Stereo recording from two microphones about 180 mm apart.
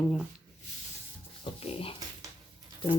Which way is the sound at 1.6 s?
30° left (ahead or behind).